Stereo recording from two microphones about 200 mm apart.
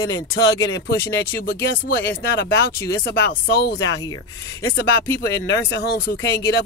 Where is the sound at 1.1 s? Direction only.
50° left (ahead or behind).